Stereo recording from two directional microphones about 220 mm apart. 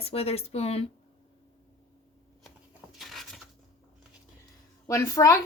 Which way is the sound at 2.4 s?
Centre (ahead or behind).